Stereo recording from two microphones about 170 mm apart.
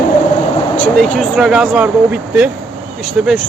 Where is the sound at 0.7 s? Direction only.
10° left (ahead or behind).